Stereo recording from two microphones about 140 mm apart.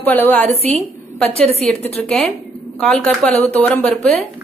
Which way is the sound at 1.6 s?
5° left (ahead or behind).